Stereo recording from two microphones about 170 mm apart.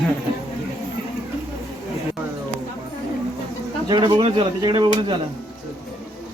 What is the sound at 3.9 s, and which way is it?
Speech, 30° right (ahead or behind).